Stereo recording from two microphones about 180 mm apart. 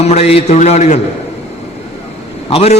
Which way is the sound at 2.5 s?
35° left (ahead or behind).